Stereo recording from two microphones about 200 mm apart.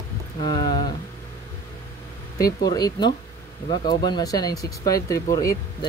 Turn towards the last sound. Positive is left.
turn(degrees=15)  # may be behind; listen again after turning